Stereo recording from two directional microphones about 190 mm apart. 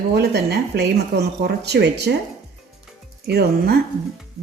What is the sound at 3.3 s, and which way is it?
Speech, 55° right (ahead or behind).